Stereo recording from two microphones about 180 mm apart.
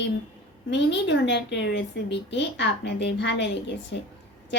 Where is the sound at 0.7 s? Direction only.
80° left.